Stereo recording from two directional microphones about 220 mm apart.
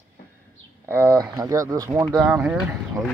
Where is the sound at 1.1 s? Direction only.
15° right (ahead or behind).